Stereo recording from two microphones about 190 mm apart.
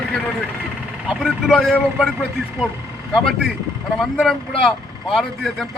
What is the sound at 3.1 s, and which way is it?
A man's voice, centre (ahead or behind).